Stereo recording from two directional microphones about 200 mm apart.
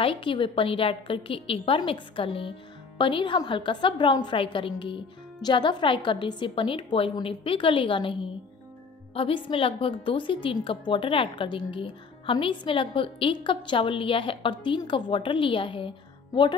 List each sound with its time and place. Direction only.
0.0 s a woman's voice: 25° left (ahead or behind)